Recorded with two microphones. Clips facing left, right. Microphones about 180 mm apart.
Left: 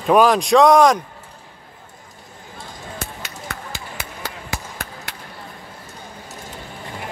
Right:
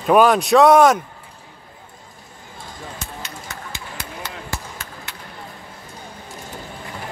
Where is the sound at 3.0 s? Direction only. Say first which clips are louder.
Left 1 dB; 55° left (ahead or behind).